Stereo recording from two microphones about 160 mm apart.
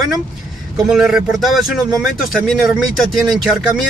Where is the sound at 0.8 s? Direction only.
5° right (ahead or behind).